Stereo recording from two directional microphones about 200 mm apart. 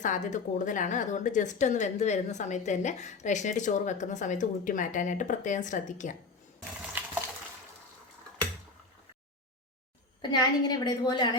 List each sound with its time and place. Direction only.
0.0 s speech: 40° left (ahead or behind)
10.2 s a woman's voice: 20° left (ahead or behind)